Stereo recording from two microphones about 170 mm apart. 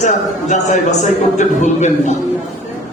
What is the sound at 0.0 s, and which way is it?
Speech, 45° left (ahead or behind).